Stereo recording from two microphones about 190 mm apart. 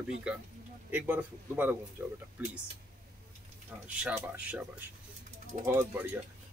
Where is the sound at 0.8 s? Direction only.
10° right (ahead or behind).